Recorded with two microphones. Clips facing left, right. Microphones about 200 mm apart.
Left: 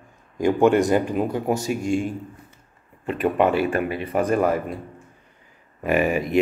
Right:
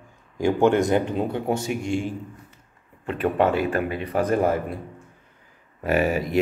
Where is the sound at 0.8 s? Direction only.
25° right (ahead or behind).